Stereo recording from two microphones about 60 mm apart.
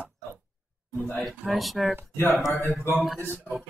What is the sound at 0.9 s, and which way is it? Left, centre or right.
Speech, left.